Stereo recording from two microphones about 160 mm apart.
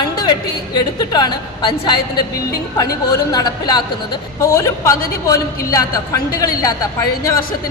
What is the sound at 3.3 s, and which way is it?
A woman's voice, 25° left (ahead or behind).